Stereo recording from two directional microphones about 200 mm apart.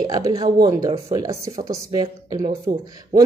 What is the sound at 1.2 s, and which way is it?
A woman's voice, 15° right (ahead or behind).